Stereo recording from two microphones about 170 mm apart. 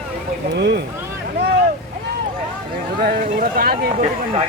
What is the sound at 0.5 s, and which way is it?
Speech, 80° right.